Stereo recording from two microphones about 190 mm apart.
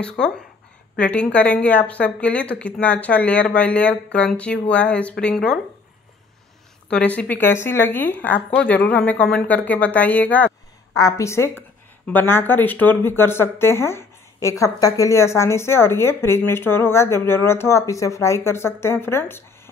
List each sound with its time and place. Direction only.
0.2 s speech: 5° left (ahead or behind)
6.9 s speech: 5° left (ahead or behind)